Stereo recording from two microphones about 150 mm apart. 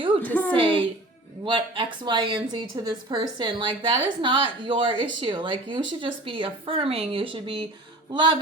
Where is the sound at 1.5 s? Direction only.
35° right (ahead or behind).